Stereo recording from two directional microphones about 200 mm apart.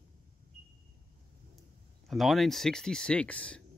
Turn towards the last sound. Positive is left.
turn(degrees=5)  # may be behind; listen again after turning